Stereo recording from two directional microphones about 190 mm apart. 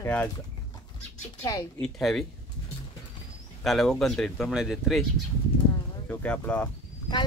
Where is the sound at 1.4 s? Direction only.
15° left (ahead or behind).